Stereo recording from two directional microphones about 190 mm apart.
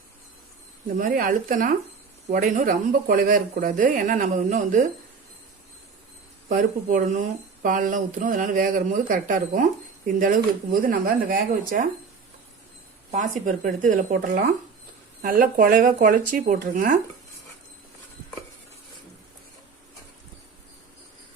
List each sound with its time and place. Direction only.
0.9 s speech: 45° right (ahead or behind)
6.5 s speech: 45° right (ahead or behind)
13.1 s speech: 40° right (ahead or behind)